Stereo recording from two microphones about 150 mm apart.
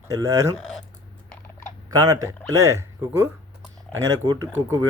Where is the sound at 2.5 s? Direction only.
20° right (ahead or behind).